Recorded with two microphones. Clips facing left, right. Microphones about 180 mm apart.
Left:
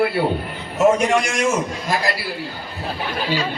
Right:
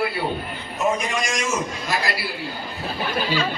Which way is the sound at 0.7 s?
75° left (ahead or behind).